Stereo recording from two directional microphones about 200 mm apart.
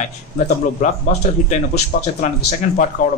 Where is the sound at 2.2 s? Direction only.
35° left (ahead or behind).